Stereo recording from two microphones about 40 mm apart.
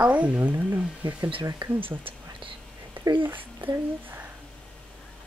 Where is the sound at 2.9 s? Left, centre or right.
Right.